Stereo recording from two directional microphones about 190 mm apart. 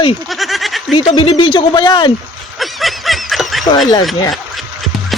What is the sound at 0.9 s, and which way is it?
Speech, 30° left (ahead or behind).